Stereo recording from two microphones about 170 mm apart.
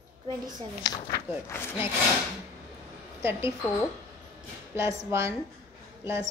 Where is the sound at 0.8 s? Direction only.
25° left (ahead or behind).